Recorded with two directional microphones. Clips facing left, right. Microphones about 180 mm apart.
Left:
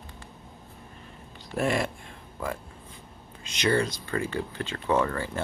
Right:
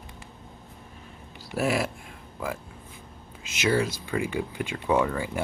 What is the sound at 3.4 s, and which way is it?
Speech, 5° right (ahead or behind).